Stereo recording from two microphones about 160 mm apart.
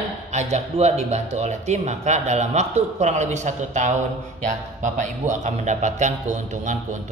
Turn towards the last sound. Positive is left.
turn(degrees=-50)  # may be behind; listen again after turning